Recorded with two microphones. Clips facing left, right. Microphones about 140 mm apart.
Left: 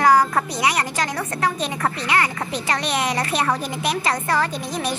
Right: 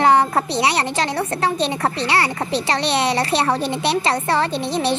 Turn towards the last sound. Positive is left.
turn(degrees=-30)  # may be behind; listen again after turning